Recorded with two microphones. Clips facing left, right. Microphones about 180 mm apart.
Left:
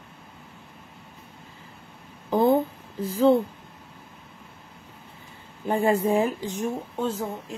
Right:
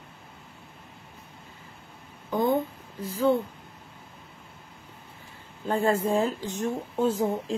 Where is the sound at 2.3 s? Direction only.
35° left (ahead or behind).